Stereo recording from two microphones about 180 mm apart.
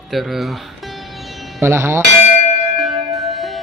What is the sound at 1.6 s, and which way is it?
Speech, 15° right (ahead or behind).